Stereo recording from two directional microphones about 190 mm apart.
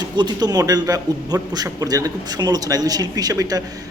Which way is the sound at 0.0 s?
20° right (ahead or behind).